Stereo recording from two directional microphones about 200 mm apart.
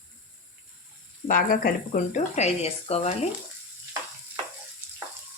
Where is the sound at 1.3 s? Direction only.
40° left (ahead or behind).